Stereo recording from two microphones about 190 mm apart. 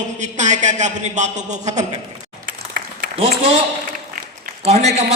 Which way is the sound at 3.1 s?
35° right (ahead or behind).